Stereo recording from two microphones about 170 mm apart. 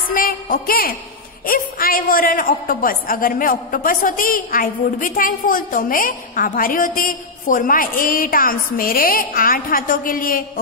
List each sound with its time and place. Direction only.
0.1 s a man's voice: 55° left (ahead or behind)